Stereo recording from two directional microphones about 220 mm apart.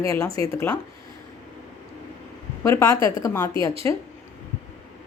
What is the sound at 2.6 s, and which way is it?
A woman's voice, 15° left (ahead or behind).